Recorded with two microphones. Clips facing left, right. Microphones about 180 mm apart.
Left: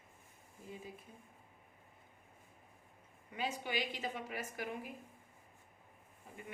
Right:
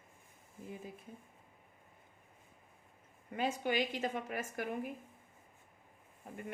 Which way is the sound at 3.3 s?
50° right (ahead or behind).